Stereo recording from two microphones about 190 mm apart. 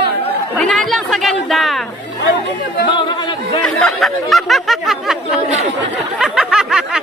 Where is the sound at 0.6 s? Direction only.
Centre (ahead or behind).